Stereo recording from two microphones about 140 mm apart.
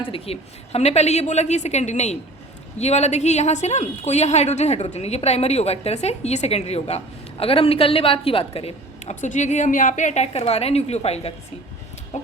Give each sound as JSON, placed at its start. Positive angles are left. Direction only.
{"t": 0.0, "sound": "a woman's voice", "side_deg": 45}